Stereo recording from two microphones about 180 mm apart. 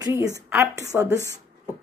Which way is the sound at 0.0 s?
20° right (ahead or behind).